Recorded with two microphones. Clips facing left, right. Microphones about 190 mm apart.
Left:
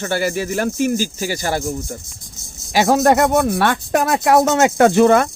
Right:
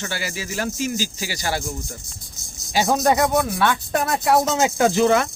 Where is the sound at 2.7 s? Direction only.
75° left (ahead or behind).